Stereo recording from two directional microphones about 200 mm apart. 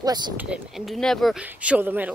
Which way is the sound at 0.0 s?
20° right (ahead or behind).